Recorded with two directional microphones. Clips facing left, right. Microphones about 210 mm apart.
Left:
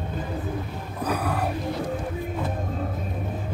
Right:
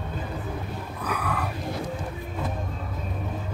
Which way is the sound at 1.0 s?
35° left (ahead or behind).